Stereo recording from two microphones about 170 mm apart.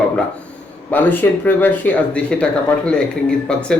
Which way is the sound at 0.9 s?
10° left (ahead or behind).